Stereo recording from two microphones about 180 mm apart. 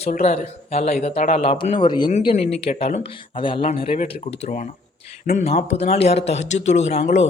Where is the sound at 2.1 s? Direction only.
35° left (ahead or behind).